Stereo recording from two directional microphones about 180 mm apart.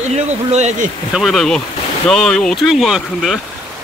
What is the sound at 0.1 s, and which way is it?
Speech, 40° right (ahead or behind).